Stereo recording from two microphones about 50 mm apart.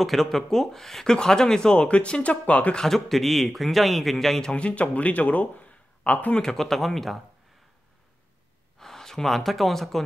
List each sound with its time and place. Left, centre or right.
0.0 s speech: centre; by 2.8 s left
2.8 s a man's voice: centre
4.6 s speech: left
6.3 s a man's voice: centre
8.7 s speech: centre